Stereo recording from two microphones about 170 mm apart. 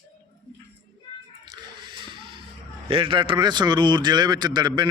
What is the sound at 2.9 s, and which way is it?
A man's voice, 30° right (ahead or behind).